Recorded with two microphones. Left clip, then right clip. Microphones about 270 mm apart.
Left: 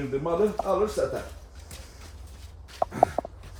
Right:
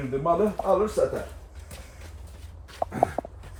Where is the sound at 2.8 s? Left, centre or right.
Right.